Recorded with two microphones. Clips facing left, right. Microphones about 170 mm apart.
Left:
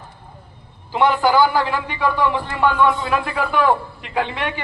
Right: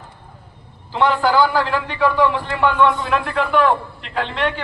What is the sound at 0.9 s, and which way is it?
A man's voice, 15° left (ahead or behind).